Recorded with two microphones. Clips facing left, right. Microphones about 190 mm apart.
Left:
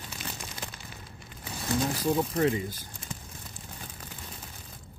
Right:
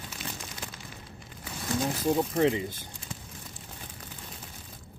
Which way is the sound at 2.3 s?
20° right (ahead or behind).